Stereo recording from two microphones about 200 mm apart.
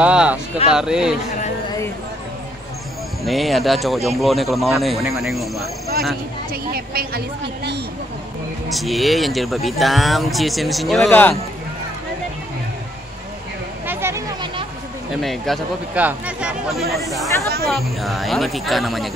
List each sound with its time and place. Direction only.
0.0 s speech: 5° right (ahead or behind)
3.3 s speech: centre (ahead or behind)
6.5 s a woman's voice: 50° right (ahead or behind)
8.6 s speech: centre (ahead or behind)
13.8 s a sound: 10° right (ahead or behind)
15.1 s speech: centre (ahead or behind)